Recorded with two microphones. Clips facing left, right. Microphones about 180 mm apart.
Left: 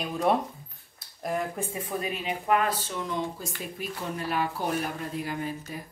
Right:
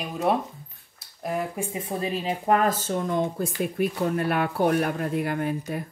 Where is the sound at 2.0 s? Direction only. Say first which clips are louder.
Right 6 dB; 35° right (ahead or behind).